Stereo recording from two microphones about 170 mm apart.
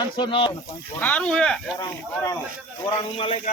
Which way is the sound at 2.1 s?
15° left (ahead or behind).